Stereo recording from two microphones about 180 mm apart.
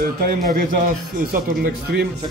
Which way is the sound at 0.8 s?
55° right (ahead or behind).